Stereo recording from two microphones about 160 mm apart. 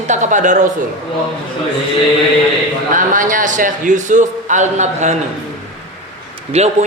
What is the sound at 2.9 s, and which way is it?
Speech, 55° right (ahead or behind).